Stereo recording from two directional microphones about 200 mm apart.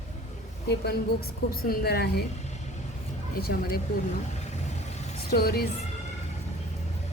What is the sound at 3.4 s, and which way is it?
Speech, 50° left (ahead or behind).